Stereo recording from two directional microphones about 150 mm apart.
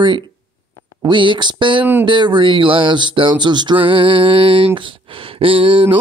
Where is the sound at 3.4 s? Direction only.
30° right (ahead or behind).